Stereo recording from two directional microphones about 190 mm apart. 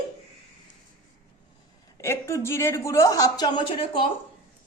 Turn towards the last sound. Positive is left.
turn(degrees=25)  # may be behind; listen again after turning